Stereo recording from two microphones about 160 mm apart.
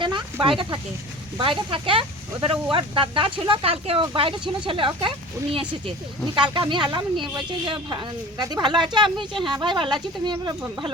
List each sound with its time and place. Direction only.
0.4 s speech: 30° right (ahead or behind)